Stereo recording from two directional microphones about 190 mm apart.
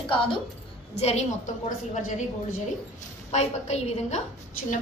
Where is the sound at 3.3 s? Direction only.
35° left (ahead or behind).